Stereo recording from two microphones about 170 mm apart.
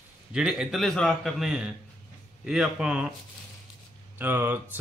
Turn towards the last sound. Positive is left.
turn(degrees=-10)  # may be behind; listen again after turning